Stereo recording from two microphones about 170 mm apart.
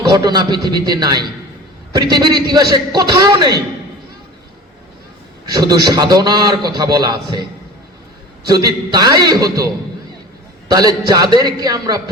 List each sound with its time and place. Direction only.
0.1 s a man's voice: 25° right (ahead or behind)
5.5 s a man's voice: 25° right (ahead or behind)
8.4 s a man's voice: 20° right (ahead or behind)
10.7 s a man's voice: 25° right (ahead or behind)